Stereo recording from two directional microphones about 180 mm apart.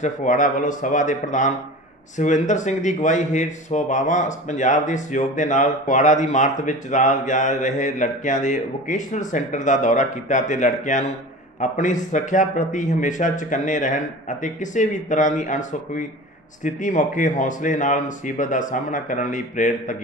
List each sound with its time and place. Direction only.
0.0 s speech: 45° left (ahead or behind)